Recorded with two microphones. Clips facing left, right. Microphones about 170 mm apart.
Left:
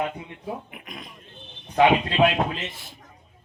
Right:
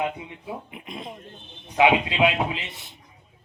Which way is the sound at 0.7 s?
25° right (ahead or behind).